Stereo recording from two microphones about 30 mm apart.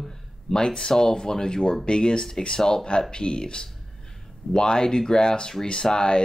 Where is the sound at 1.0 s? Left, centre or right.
Left.